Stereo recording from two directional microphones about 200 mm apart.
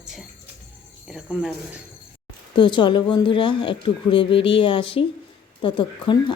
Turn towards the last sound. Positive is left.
turn(degrees=25)  # may be behind; listen again after turning